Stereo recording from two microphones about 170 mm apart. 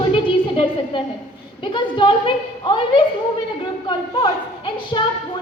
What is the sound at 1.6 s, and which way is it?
A woman's voice, 30° left (ahead or behind).